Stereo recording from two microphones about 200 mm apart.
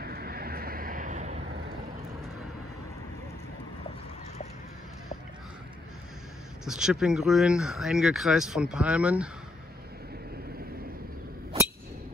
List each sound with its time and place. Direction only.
0.0 s vehicle: 50° right (ahead or behind)
6.6 s speech: 5° right (ahead or behind)